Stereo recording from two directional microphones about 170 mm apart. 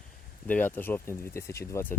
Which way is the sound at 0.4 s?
10° left (ahead or behind).